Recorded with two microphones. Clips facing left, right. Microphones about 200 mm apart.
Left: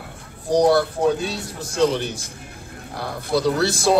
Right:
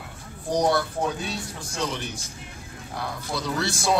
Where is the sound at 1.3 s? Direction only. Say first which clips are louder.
Left 5 dB; 35° left (ahead or behind).